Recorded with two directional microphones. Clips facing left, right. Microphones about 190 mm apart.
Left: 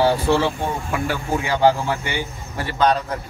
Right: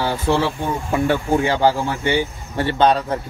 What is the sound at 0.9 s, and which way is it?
A man's voice, 30° right (ahead or behind).